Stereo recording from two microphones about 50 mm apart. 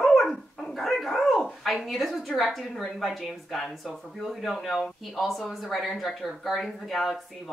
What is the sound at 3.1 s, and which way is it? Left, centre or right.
Speech, centre.